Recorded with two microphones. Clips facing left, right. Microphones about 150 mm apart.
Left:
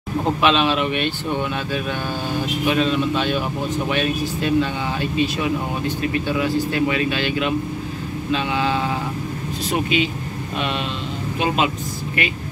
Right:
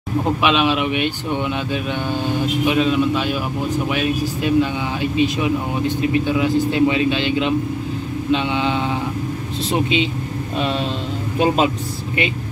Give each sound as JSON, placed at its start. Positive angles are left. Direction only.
{"t": 0.4, "sound": "speech", "side_deg": -10}
{"t": 11.3, "sound": "speech", "side_deg": -35}